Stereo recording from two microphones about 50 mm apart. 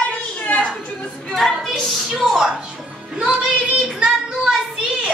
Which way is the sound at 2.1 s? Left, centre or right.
Centre.